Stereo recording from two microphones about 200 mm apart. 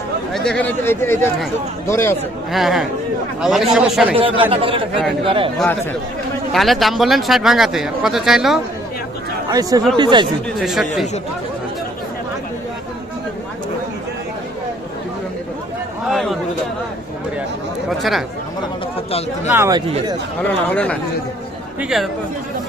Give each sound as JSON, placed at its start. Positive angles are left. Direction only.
{"t": 0.3, "sound": "speech", "side_deg": 5}
{"t": 2.5, "sound": "speech", "side_deg": 0}
{"t": 4.1, "sound": "speech", "side_deg": -25}
{"t": 5.5, "sound": "speech", "side_deg": 5}
{"t": 9.5, "sound": "speech", "side_deg": -20}
{"t": 10.6, "sound": "speech", "side_deg": 0}
{"t": 16.0, "sound": "a sound", "side_deg": 0}
{"t": 17.8, "sound": "speech", "side_deg": 0}
{"t": 19.5, "sound": "speech", "side_deg": -15}
{"t": 20.7, "sound": "speech", "side_deg": 5}